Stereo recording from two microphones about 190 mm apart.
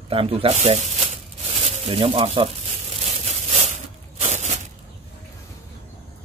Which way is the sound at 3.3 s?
35° right (ahead or behind).